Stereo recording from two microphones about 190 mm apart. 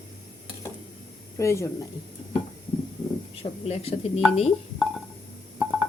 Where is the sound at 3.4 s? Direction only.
35° left (ahead or behind).